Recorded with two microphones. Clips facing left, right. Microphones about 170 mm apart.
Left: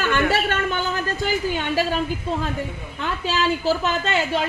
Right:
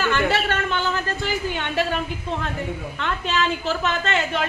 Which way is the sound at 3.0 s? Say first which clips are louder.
Left 1 dB; 35° left (ahead or behind).